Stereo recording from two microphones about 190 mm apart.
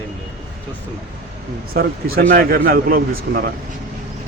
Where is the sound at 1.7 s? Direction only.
50° right (ahead or behind).